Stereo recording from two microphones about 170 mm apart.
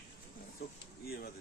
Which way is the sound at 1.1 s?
65° left (ahead or behind).